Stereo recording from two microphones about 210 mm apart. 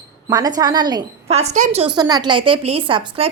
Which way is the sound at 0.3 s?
15° right (ahead or behind).